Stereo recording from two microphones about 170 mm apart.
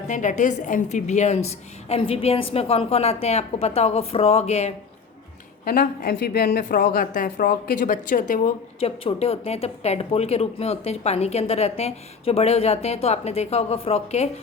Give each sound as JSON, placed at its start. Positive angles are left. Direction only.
{"t": 0.1, "sound": "speech", "side_deg": 45}
{"t": 5.6, "sound": "a woman's voice", "side_deg": 55}
{"t": 8.8, "sound": "speech", "side_deg": 35}